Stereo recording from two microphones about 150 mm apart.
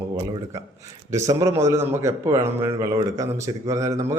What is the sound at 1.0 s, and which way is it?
A man's voice, 20° right (ahead or behind).